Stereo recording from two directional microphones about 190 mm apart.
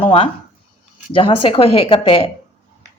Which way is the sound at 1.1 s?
30° left (ahead or behind).